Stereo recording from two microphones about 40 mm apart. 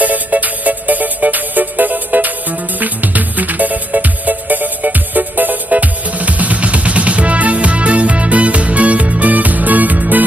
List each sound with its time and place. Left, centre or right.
0.0 s music: right